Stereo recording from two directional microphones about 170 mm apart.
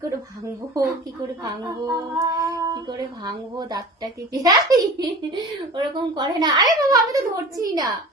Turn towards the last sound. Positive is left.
turn(degrees=-20)  # may be behind; listen again after turning